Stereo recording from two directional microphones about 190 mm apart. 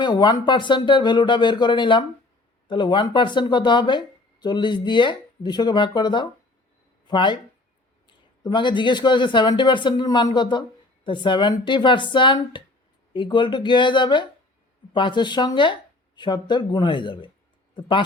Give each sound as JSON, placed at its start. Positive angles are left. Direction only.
{"t": 0.0, "sound": "a man's voice", "side_deg": 25}